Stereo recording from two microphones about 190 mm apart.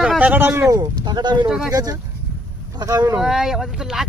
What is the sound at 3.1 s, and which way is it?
Speech, 5° right (ahead or behind).